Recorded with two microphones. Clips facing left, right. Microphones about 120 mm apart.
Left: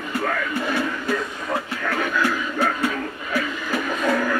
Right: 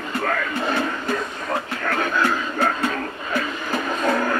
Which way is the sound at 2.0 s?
25° right (ahead or behind).